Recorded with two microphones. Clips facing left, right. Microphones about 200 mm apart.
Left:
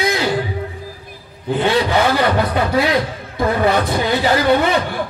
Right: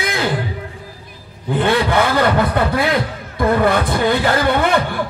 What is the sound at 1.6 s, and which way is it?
Speech, 55° right (ahead or behind).